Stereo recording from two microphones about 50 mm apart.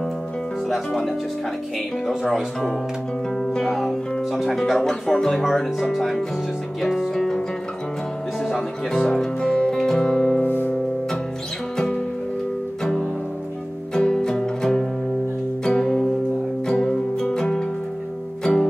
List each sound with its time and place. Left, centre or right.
0.7 s speech: centre
3.6 s speech: centre
6.8 s music: centre
8.5 s music: centre
10.4 s music: left
11.7 s music: centre
13.9 s music: centre